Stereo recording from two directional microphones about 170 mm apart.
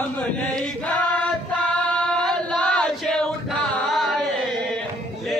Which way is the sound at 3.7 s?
Centre (ahead or behind).